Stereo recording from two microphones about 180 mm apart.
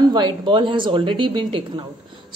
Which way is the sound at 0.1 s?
25° right (ahead or behind).